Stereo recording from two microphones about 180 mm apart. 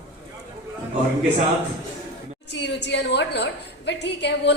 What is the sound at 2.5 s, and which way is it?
A woman's voice, 75° left (ahead or behind).